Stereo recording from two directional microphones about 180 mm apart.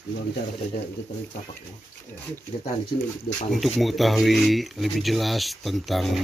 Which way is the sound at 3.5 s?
Centre (ahead or behind).